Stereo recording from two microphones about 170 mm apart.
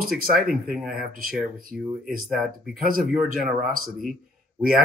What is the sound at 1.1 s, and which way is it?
Speech, 55° right (ahead or behind).